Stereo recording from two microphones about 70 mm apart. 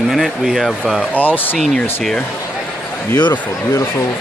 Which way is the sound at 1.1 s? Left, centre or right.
Left.